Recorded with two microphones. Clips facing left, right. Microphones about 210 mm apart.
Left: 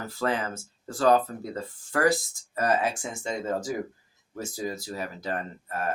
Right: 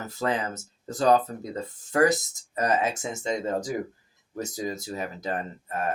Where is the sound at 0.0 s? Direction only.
20° right (ahead or behind).